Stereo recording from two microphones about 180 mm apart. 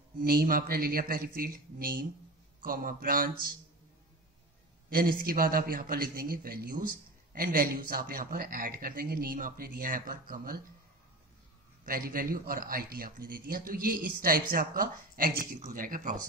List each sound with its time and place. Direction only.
0.2 s a man's voice: 55° right (ahead or behind)
4.8 s a man's voice: 55° right (ahead or behind)
11.8 s a man's voice: 55° right (ahead or behind)